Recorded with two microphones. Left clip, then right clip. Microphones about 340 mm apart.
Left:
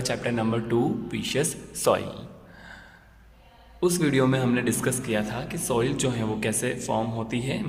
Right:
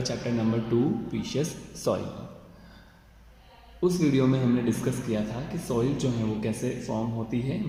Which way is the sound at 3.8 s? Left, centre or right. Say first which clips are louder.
Left 2 dB; left.